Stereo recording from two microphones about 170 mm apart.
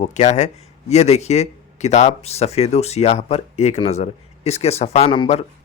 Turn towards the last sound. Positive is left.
turn(degrees=35)  # may be behind; listen again after turning